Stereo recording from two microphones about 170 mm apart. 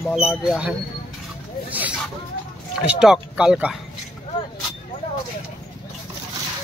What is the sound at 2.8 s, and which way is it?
Speech, 5° right (ahead or behind).